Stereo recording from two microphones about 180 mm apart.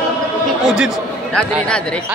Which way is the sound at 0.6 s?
5° right (ahead or behind).